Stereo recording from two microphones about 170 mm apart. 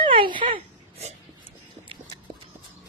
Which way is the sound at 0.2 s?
30° right (ahead or behind).